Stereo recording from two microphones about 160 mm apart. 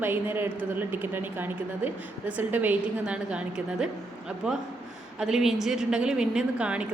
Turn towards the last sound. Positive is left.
turn(degrees=-5)  # may be behind; listen again after turning